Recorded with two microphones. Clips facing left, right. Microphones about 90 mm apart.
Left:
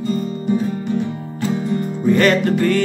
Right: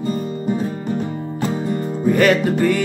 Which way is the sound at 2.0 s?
10° right (ahead or behind).